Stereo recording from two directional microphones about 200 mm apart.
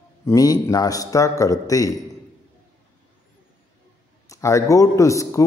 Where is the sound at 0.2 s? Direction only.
15° left (ahead or behind).